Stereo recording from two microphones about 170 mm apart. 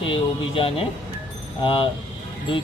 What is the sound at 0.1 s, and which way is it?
Speech, 30° left (ahead or behind).